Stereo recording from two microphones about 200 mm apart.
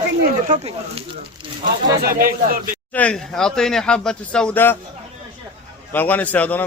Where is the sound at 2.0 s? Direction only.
45° right (ahead or behind).